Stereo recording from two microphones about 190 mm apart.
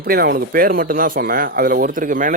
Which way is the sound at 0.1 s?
55° right (ahead or behind).